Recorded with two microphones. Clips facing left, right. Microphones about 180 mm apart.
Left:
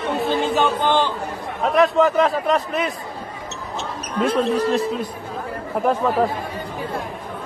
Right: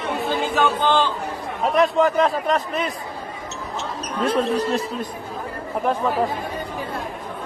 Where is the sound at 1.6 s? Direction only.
Centre (ahead or behind).